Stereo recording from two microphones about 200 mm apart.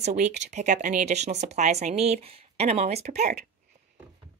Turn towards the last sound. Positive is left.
turn(degrees=-35)  # may be behind; listen again after turning